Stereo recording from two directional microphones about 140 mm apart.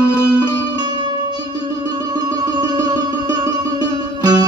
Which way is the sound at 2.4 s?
30° right (ahead or behind).